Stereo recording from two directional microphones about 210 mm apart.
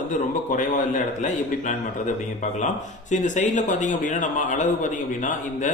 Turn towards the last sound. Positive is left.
turn(degrees=35)  # may be behind; listen again after turning